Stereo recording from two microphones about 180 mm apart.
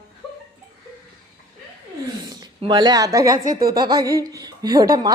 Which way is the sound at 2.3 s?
20° right (ahead or behind).